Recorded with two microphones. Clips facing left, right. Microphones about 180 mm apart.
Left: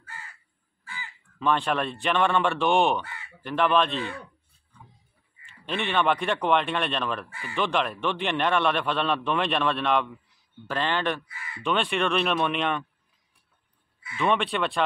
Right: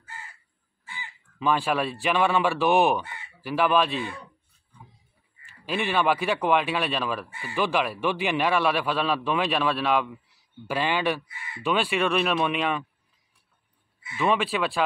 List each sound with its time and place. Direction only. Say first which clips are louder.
0.0 s crow: right 1 dB; 20° right (ahead or behind)
1.4 s a man's voice: right 1 dB; 5° right (ahead or behind)
3.0 s crow: even; 15° right (ahead or behind)
3.3 s speech: right 1 dB; 5° right (ahead or behind)
5.5 s a man's voice: right 1 dB; 5° right (ahead or behind)
11.2 s speech: even; 20° right (ahead or behind)
11.6 s a man's voice: right 1 dB; 5° right (ahead or behind)
14.1 s a man's voice: right 1 dB; 5° right (ahead or behind)